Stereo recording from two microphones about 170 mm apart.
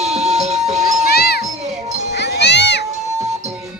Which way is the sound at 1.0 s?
70° left (ahead or behind).